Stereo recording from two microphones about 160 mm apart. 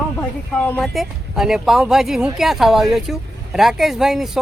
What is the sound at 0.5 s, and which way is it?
Speech, 10° left (ahead or behind).